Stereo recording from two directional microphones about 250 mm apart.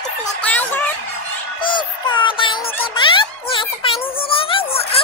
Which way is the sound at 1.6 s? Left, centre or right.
Centre.